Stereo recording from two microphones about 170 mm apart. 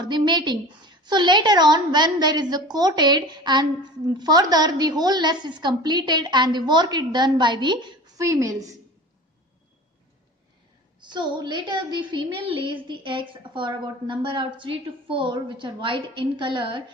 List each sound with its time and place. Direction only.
0.0 s a woman's voice: 25° right (ahead or behind)
11.0 s a woman's voice: 25° right (ahead or behind)